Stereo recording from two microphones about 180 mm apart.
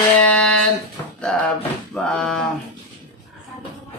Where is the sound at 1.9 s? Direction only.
5° left (ahead or behind).